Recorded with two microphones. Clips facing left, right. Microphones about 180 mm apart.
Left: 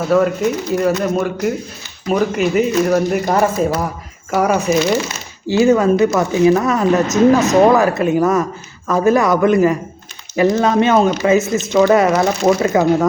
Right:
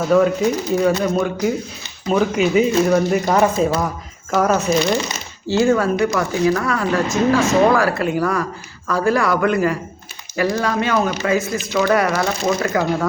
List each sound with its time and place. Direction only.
0.1 s speech: centre (ahead or behind)
4.3 s speech: 10° left (ahead or behind)
5.5 s speech: 20° left (ahead or behind)